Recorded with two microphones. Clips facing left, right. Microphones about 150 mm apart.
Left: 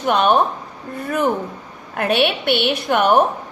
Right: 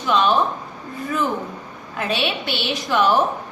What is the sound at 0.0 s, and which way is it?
Speech, 60° left (ahead or behind).